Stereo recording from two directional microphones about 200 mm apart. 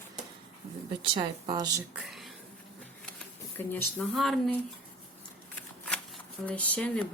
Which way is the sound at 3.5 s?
10° left (ahead or behind).